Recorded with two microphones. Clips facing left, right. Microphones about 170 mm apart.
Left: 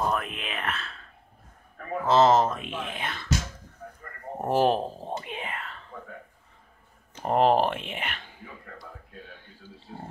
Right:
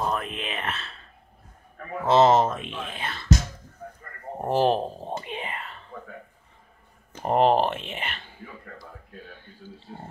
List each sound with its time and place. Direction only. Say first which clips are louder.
0.1 s whispering: right 1 dB; centre (ahead or behind)
2.0 s speech: right 2 dB; 10° right (ahead or behind)
2.6 s speech: even; 10° left (ahead or behind)
4.4 s whispering: right 1 dB; 5° left (ahead or behind)
7.2 s speech: right 1 dB; centre (ahead or behind)